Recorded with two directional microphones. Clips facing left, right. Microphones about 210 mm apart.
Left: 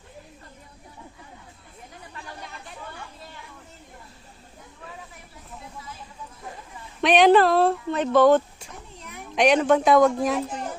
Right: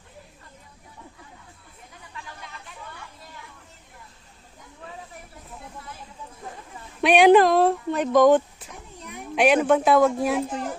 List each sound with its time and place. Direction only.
7.0 s speech: 10° right (ahead or behind)